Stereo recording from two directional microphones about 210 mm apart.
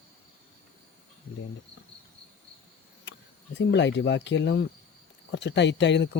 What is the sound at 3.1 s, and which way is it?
Speech, 55° left (ahead or behind).